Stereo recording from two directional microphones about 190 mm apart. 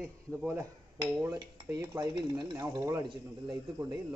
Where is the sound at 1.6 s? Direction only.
20° right (ahead or behind).